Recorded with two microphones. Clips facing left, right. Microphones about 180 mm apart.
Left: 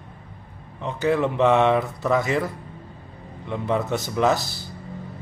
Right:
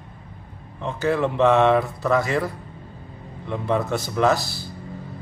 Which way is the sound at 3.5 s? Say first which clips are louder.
Right 1 dB; 20° left (ahead or behind).